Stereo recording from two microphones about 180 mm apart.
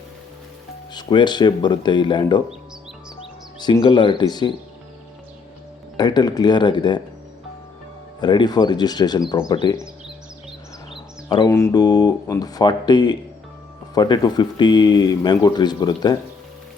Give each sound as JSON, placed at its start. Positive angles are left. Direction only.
{"t": 0.9, "sound": "speech", "side_deg": 25}
{"t": 3.6, "sound": "speech", "side_deg": 25}
{"t": 6.0, "sound": "speech", "side_deg": 20}
{"t": 8.2, "sound": "speech", "side_deg": 25}
{"t": 10.9, "sound": "speech", "side_deg": 25}